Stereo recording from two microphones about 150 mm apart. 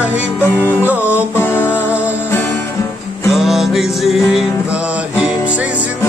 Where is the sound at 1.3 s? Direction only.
15° left (ahead or behind).